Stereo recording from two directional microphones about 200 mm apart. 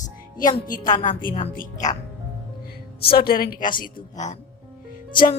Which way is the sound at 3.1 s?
50° left (ahead or behind).